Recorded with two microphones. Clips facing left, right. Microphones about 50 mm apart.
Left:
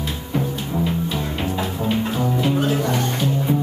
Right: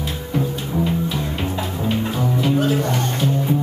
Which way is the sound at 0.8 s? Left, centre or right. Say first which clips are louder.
Right 1 dB; centre.